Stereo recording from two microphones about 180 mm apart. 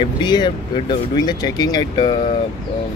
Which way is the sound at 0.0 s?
25° left (ahead or behind).